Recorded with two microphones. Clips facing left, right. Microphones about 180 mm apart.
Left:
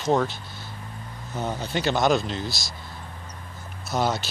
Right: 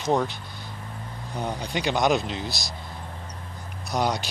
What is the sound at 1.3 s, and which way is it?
Speech, 5° left (ahead or behind).